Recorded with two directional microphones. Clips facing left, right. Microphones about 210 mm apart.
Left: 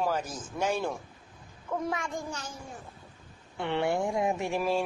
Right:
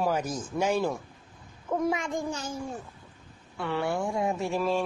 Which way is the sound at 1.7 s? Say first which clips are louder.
Right 4 dB; 20° right (ahead or behind).